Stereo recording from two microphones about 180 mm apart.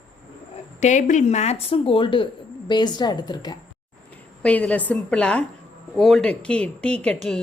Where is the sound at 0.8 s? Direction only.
40° left (ahead or behind); by 3.6 s 25° left (ahead or behind).